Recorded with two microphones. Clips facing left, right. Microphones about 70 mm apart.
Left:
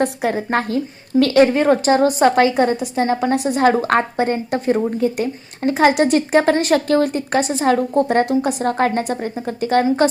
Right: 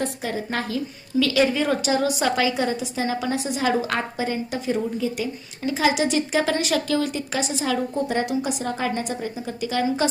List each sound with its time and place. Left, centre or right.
0.0 s a woman's voice: left
3.3 s a woman's voice: left